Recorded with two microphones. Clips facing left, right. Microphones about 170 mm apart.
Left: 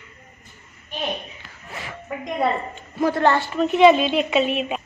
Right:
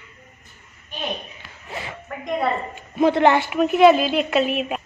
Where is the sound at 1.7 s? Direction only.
25° right (ahead or behind).